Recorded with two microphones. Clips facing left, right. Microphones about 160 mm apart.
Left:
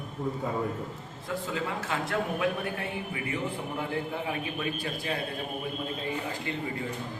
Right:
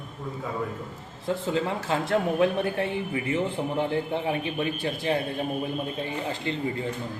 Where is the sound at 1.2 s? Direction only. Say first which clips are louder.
Right 6 dB; 25° right (ahead or behind).